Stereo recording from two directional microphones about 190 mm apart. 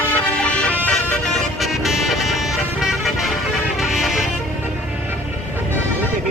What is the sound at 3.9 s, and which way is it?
Music, 5° right (ahead or behind).